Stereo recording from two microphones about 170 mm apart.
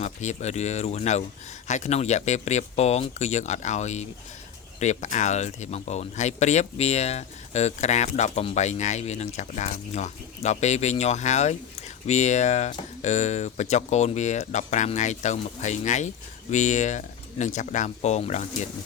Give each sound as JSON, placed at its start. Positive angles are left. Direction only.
{"t": 0.0, "sound": "speech", "side_deg": 45}